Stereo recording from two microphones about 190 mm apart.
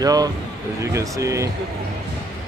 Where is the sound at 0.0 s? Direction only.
20° right (ahead or behind).